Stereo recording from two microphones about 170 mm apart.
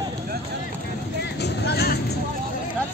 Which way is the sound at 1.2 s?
70° left (ahead or behind).